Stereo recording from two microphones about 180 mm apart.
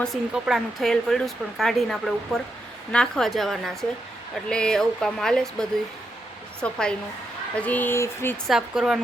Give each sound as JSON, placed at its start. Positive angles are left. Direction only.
{"t": 0.0, "sound": "speech", "side_deg": 0}
{"t": 8.4, "sound": "speech", "side_deg": 0}